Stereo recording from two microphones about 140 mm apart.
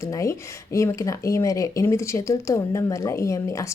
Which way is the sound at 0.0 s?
20° left (ahead or behind).